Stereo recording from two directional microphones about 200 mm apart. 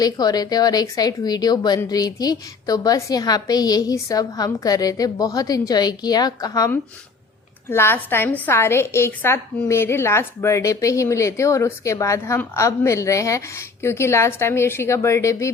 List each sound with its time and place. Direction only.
0.0 s a woman's voice: 20° left (ahead or behind)